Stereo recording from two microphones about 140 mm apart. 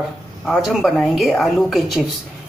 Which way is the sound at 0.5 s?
Centre (ahead or behind).